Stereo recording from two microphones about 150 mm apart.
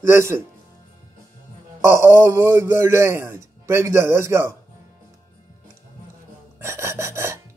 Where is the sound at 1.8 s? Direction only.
20° right (ahead or behind).